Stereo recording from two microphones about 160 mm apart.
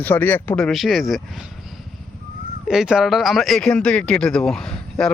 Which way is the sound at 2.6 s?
5° right (ahead or behind).